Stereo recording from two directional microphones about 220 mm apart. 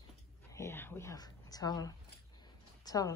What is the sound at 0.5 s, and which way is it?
Speech, 10° left (ahead or behind).